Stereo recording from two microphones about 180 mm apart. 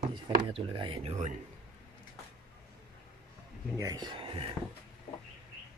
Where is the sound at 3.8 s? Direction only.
20° right (ahead or behind).